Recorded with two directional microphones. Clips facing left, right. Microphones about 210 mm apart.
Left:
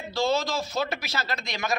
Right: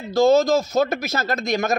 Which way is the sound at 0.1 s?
45° right (ahead or behind).